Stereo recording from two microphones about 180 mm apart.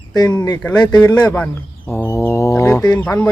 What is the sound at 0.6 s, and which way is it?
Speech, 5° left (ahead or behind).